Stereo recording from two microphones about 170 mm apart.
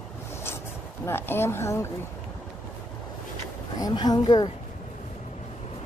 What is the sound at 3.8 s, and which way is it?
Speech, 25° left (ahead or behind).